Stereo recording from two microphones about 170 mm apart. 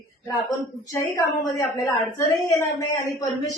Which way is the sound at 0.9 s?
20° left (ahead or behind).